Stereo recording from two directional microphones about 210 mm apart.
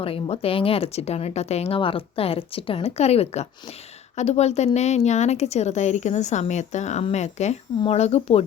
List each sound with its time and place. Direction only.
0.0 s speech: 25° left (ahead or behind)